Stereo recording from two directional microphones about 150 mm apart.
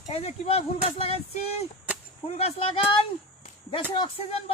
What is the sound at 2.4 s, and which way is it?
Speech, 40° left (ahead or behind).